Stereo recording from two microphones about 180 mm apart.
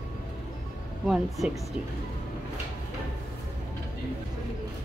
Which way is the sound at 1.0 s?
Centre (ahead or behind).